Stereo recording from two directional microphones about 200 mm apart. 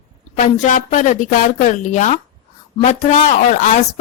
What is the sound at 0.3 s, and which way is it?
Speech, 35° left (ahead or behind).